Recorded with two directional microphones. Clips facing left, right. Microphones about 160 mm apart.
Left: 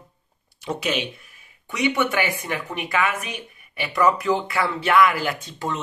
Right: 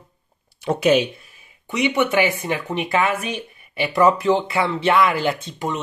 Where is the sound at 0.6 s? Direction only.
50° right (ahead or behind).